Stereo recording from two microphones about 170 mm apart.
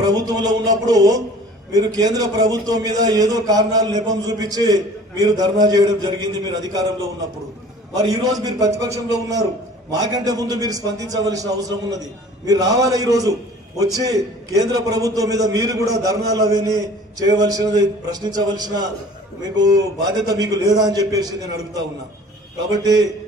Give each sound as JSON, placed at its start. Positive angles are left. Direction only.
{"t": 0.0, "sound": "a sound", "side_deg": -25}
{"t": 1.7, "sound": "a man's voice", "side_deg": -20}
{"t": 7.9, "sound": "a man's voice", "side_deg": -20}